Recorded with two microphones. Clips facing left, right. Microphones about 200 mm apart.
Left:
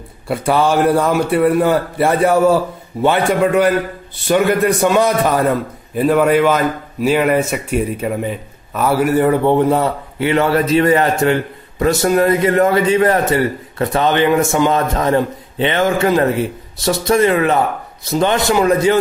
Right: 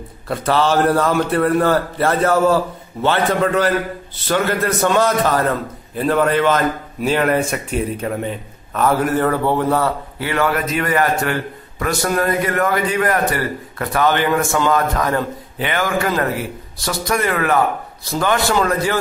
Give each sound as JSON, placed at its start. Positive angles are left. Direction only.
{"t": 0.3, "sound": "a man's voice", "side_deg": 10}